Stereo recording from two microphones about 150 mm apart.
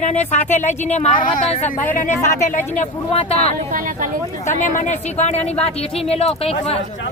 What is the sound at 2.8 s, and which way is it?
Speech, 45° left (ahead or behind).